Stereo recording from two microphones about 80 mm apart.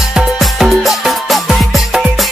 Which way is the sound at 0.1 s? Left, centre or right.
Centre.